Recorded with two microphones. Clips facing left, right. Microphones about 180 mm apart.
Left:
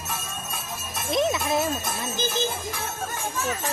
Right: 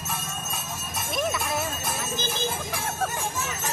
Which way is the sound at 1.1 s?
20° left (ahead or behind).